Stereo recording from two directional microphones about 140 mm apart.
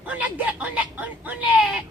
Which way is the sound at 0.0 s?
10° right (ahead or behind).